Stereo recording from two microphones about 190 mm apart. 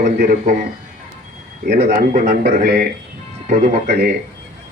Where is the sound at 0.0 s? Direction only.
50° right (ahead or behind).